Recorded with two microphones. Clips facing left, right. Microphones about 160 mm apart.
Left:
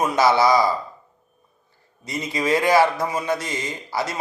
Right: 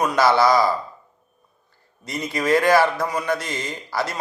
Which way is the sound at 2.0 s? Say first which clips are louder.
Right 1 dB; 20° left (ahead or behind).